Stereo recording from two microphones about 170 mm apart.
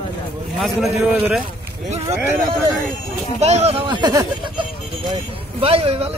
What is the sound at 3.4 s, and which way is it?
Speech, 40° right (ahead or behind).